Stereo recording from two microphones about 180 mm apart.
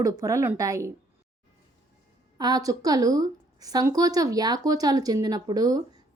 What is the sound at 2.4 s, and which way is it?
A woman's voice, 20° right (ahead or behind).